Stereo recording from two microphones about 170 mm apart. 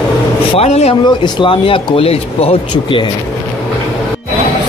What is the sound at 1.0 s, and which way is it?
Speech, 25° left (ahead or behind).